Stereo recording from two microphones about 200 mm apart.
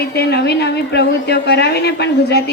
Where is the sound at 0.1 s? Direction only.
55° left (ahead or behind).